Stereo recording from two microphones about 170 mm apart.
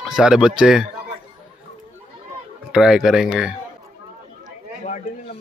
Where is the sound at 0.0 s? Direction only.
5° right (ahead or behind).